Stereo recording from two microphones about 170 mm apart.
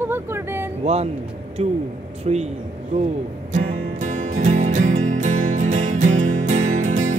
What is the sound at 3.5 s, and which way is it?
Music, 45° right (ahead or behind).